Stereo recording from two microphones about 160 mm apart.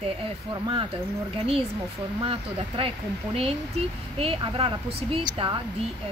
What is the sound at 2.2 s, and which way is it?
Speech, 35° right (ahead or behind).